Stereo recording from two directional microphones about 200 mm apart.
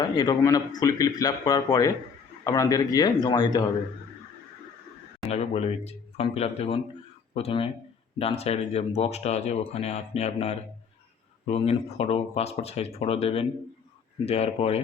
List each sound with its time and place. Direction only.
0.0 s speech: 20° left (ahead or behind)
5.3 s speech: 30° left (ahead or behind)